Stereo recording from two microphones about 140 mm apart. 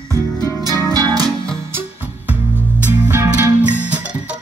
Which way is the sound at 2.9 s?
15° right (ahead or behind).